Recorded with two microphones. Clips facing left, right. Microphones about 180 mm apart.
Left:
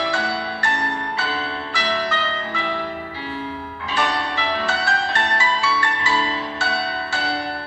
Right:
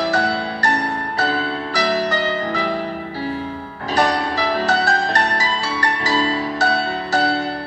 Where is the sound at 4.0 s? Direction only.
40° right (ahead or behind).